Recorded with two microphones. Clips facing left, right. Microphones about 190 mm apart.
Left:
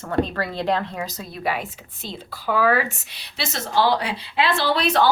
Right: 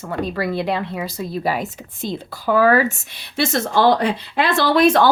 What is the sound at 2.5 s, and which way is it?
A woman's voice, 40° right (ahead or behind).